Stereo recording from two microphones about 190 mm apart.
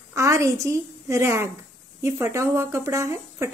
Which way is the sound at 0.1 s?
15° right (ahead or behind).